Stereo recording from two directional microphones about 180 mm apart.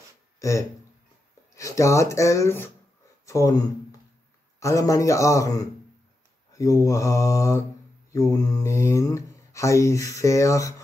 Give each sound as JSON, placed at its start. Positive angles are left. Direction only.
{"t": 0.4, "sound": "speech", "side_deg": 15}